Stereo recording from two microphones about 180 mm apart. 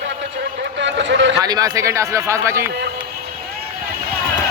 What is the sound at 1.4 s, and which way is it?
Speech, 20° right (ahead or behind).